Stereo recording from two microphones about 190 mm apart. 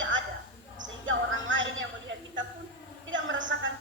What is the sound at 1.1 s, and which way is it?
Speech, 85° right.